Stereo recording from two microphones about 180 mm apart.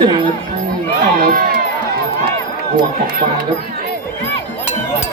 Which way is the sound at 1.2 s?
55° right (ahead or behind).